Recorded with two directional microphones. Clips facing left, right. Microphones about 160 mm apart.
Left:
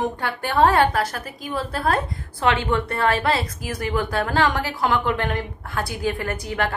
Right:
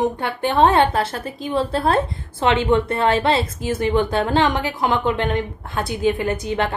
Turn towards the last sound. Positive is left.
turn(degrees=-20)  # may be behind; listen again after turning